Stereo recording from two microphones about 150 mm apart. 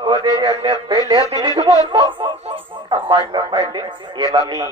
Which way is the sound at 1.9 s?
30° right (ahead or behind).